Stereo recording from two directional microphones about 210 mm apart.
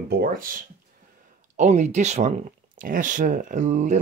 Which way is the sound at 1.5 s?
35° right (ahead or behind).